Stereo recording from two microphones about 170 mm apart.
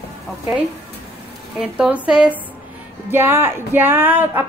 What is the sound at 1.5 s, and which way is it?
A woman's voice, 5° right (ahead or behind).